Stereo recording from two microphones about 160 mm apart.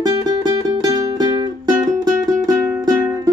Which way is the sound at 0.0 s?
25° right (ahead or behind).